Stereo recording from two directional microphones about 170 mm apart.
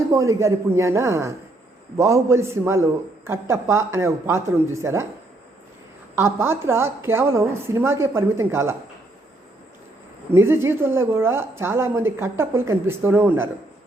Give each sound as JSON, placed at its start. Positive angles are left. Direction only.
{"t": 0.1, "sound": "a woman's voice", "side_deg": -15}
{"t": 6.1, "sound": "a woman's voice", "side_deg": -15}
{"t": 10.3, "sound": "a woman's voice", "side_deg": -15}